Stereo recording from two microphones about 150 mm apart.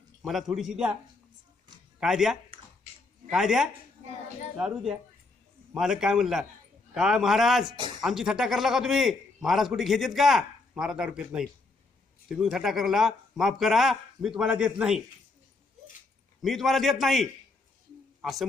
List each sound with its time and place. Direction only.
0.2 s a man's voice: centre (ahead or behind)
2.0 s a man's voice: 5° right (ahead or behind)
7.7 s speech: 30° right (ahead or behind)
8.0 s a man's voice: 5° right (ahead or behind)
16.4 s a man's voice: centre (ahead or behind)